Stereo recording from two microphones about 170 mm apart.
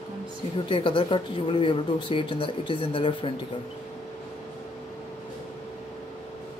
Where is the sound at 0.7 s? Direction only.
30° left (ahead or behind).